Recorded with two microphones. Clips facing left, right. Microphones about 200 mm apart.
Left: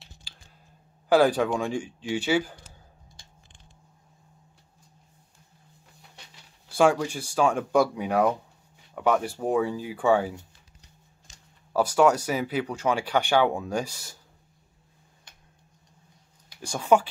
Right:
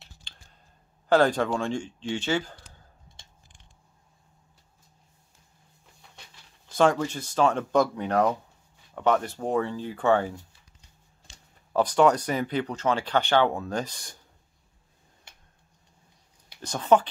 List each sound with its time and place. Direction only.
1.0 s speech: 10° left (ahead or behind)
6.7 s speech: 10° left (ahead or behind)
11.3 s a sound: 30° right (ahead or behind)
11.7 s speech: 5° left (ahead or behind)
16.6 s speech: 10° left (ahead or behind)